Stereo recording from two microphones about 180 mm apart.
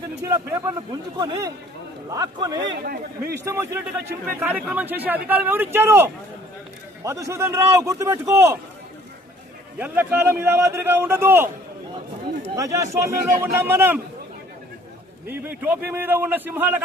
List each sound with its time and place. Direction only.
0.2 s a man's voice: 15° right (ahead or behind)
2.8 s a man's voice: 55° right (ahead or behind)
3.4 s speech: 15° right (ahead or behind)
9.7 s speech: 10° right (ahead or behind)
12.5 s speech: 15° right (ahead or behind)
15.3 s speech: 10° right (ahead or behind)